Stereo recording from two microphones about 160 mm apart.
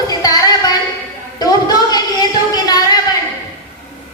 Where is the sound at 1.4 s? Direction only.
25° left (ahead or behind).